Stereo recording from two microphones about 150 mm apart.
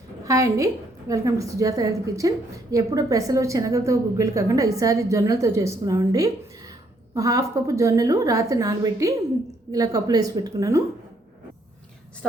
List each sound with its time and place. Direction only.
0.3 s a woman's voice: 20° right (ahead or behind)